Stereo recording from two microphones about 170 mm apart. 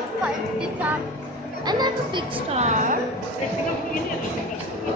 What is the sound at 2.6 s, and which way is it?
Speech, 45° right (ahead or behind).